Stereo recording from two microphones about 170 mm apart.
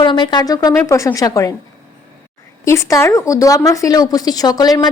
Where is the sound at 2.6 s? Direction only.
15° left (ahead or behind).